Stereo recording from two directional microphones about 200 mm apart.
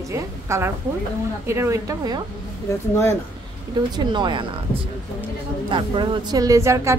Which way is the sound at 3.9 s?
25° right (ahead or behind).